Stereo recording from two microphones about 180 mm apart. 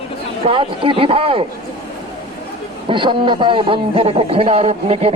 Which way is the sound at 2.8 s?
25° right (ahead or behind).